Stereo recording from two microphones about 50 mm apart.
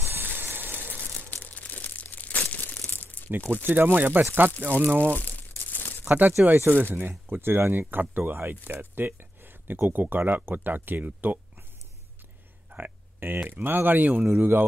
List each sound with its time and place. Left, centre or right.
0.2 s gush: right
0.9 s crumpling: left
3.3 s speech: right
3.6 s speech: right
5.1 s crumpling: left
6.0 s speech: right
12.6 s speech: right